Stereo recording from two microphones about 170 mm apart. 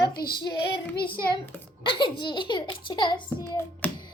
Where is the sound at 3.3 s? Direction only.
15° left (ahead or behind).